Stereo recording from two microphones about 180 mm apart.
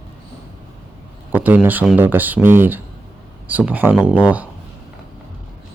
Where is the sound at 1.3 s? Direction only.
10° right (ahead or behind).